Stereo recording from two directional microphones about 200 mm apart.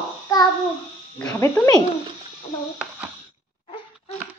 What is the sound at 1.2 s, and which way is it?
Speech, 15° left (ahead or behind).